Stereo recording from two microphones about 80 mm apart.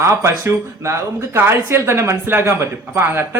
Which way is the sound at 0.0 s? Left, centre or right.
Right.